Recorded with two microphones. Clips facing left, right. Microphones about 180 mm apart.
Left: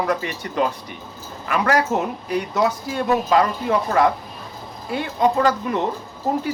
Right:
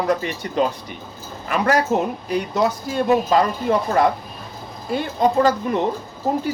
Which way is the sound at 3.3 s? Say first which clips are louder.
Right 1 dB; 35° right (ahead or behind).